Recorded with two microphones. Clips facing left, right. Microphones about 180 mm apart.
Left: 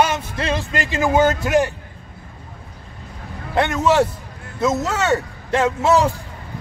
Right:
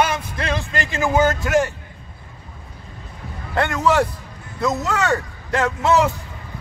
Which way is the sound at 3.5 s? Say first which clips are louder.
Left 2 dB; 20° left (ahead or behind).